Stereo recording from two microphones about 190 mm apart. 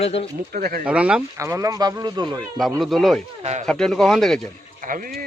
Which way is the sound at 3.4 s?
35° right (ahead or behind).